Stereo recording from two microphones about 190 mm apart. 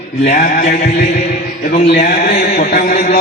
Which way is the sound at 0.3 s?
45° left (ahead or behind).